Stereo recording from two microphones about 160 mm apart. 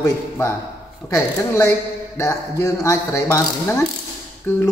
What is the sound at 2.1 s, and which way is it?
A man's voice, 20° left (ahead or behind).